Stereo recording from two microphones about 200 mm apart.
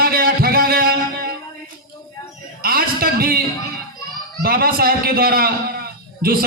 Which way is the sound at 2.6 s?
50° right (ahead or behind).